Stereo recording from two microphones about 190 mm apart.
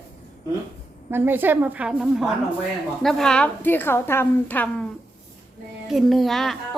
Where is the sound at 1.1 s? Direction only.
10° right (ahead or behind); by 4.9 s 10° left (ahead or behind).